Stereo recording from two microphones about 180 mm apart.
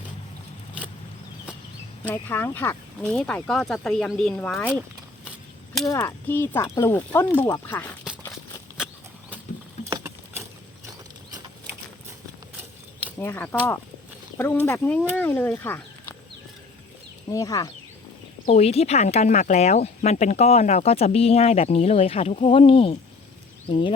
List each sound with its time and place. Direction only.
2.0 s speech: 10° left (ahead or behind)
5.9 s speech: 10° left (ahead or behind)
9.9 s patter: 15° right (ahead or behind)
13.1 s speech: 10° left (ahead or behind)
17.2 s speech: 20° left (ahead or behind)
18.4 s speech: 35° left (ahead or behind)